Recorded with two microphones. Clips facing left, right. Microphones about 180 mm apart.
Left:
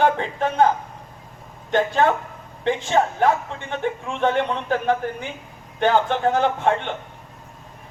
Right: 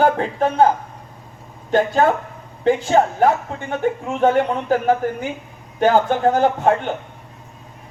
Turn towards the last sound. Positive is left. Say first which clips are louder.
# right 4 dB
turn(degrees=-40)  # may be behind; listen again after turning